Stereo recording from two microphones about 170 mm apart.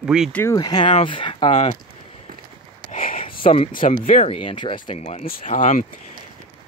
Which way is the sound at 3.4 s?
35° left (ahead or behind).